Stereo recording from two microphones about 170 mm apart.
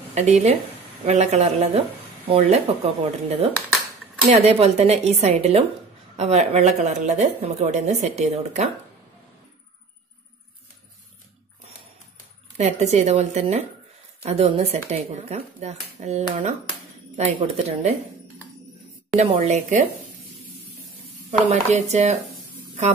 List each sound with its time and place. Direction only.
0.1 s a woman's voice: 40° right (ahead or behind)
12.5 s speech: 40° right (ahead or behind)
19.1 s speech: 40° right (ahead or behind)
21.3 s speech: 45° right (ahead or behind)